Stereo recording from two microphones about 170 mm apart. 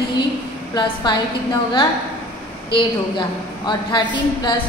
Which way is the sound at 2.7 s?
30° left (ahead or behind).